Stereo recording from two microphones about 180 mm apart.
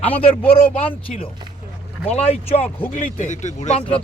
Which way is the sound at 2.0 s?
35° left (ahead or behind).